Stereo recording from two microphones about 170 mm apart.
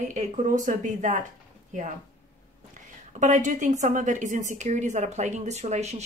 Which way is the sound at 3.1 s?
45° right (ahead or behind).